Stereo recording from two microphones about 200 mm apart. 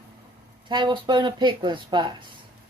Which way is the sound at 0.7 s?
25° right (ahead or behind).